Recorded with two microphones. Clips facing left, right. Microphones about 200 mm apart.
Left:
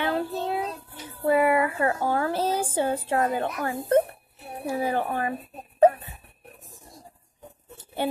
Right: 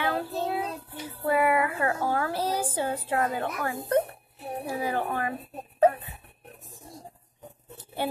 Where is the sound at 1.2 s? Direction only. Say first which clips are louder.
Left 3 dB; 30° left (ahead or behind).